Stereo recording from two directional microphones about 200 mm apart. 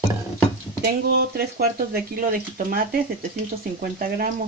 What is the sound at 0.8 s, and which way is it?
Speech, 50° right (ahead or behind).